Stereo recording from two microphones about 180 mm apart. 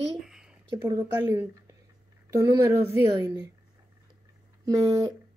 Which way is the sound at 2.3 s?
15° right (ahead or behind).